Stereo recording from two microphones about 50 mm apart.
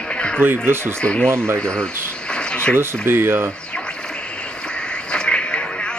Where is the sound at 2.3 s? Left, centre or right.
Left.